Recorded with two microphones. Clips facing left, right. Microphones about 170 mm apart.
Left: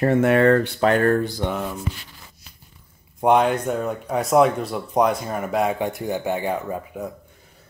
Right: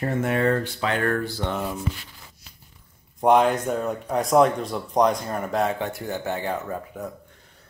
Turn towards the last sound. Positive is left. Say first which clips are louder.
# left 3 dB
turn(degrees=15)  # may be behind; listen again after turning